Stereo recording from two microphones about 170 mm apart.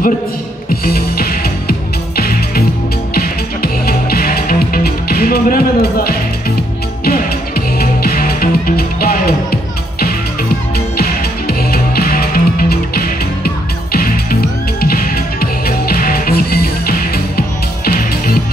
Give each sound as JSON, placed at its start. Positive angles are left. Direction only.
{"t": 0.7, "sound": "music", "side_deg": 60}